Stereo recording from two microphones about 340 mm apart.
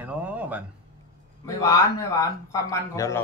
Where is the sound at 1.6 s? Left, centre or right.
Centre.